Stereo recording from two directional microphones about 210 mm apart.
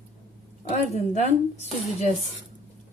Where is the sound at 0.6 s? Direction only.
30° left (ahead or behind).